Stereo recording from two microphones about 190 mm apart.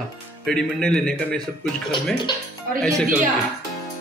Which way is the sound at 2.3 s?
25° left (ahead or behind).